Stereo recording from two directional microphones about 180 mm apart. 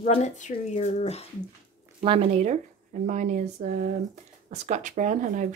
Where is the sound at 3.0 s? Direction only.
45° right (ahead or behind).